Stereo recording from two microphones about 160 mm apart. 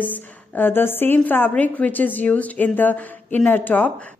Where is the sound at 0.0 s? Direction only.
10° left (ahead or behind).